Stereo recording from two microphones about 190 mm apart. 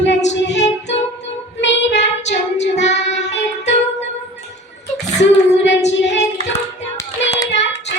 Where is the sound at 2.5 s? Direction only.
35° left (ahead or behind).